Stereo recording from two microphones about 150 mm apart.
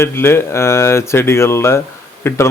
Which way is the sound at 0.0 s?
15° left (ahead or behind).